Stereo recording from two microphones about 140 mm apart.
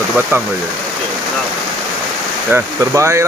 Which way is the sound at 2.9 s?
20° right (ahead or behind).